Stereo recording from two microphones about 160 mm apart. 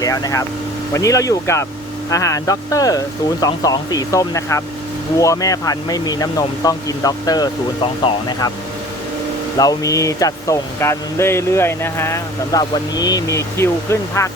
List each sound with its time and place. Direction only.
0.0 s speech: 20° left (ahead or behind)
9.6 s speech: 20° left (ahead or behind)